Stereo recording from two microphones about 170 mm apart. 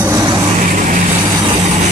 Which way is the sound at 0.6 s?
50° right (ahead or behind).